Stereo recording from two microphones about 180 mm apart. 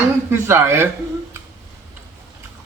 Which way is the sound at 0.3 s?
15° right (ahead or behind).